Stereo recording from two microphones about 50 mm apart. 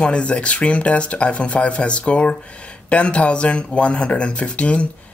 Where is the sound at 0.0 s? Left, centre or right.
Left.